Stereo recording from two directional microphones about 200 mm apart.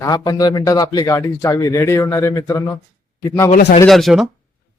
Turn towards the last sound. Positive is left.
turn(degrees=0)  # may be behind; listen again after turning